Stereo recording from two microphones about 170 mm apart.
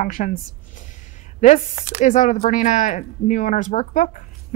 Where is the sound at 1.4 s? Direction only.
45° left (ahead or behind).